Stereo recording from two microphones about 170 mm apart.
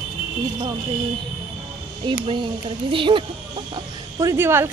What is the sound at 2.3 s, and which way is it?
Speech, 30° right (ahead or behind).